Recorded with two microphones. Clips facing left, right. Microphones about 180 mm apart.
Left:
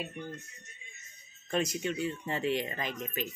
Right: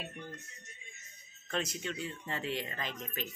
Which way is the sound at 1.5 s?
10° left (ahead or behind).